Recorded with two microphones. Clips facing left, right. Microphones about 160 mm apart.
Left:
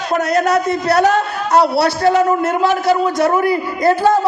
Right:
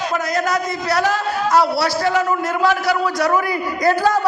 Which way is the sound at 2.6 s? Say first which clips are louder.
Left 3 dB; 25° left (ahead or behind).